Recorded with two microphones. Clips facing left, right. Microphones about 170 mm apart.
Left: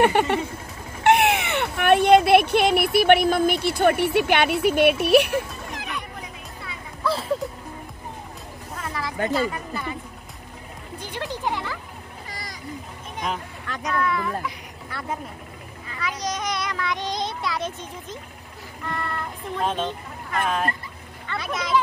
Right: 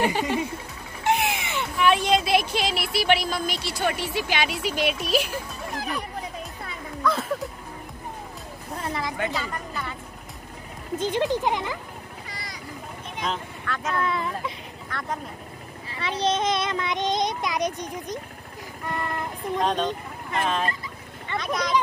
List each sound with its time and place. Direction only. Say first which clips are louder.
0.0 s speech: left 5 dB; 65° left (ahead or behind)
5.8 s a sound: right 5 dB; 35° right (ahead or behind)
7.0 s a sound: even; 30° left (ahead or behind)
8.7 s vehicle: right 2 dB; 30° right (ahead or behind)
9.3 s speech: left 6 dB; 5° left (ahead or behind)
11.0 s speech: right 8 dB; 20° right (ahead or behind)
12.3 s a sound: left 2 dB; 45° left (ahead or behind)
13.2 s speech: left 1 dB; 10° left (ahead or behind)
13.9 s a child's voice: left 4 dB; 25° right (ahead or behind)
14.9 s speech: left 1 dB; 5° left (ahead or behind)
15.9 s a child's voice: right 4 dB; 30° right (ahead or behind)
18.9 s child singing: right 1 dB; 15° right (ahead or behind)
19.7 s speech: right 2 dB; 15° right (ahead or behind)
21.4 s speech: right 2 dB; 5° left (ahead or behind)